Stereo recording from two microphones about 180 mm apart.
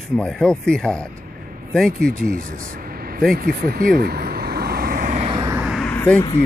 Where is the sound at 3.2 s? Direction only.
55° right (ahead or behind).